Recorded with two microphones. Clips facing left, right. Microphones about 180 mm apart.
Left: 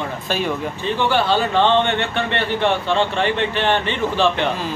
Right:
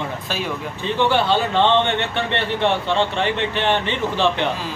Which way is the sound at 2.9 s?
20° right (ahead or behind).